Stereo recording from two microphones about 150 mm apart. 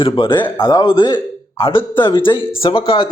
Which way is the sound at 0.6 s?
25° left (ahead or behind).